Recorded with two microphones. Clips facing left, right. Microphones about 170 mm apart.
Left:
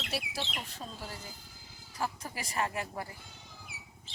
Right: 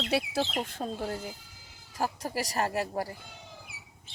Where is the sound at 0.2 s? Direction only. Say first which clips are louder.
Right 9 dB; 40° right (ahead or behind); by 1.3 s 55° right (ahead or behind).